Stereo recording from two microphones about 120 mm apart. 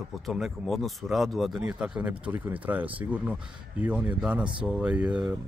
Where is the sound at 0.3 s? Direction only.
Centre (ahead or behind).